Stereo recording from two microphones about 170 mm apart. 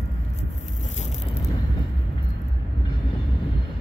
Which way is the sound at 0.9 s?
40° left (ahead or behind).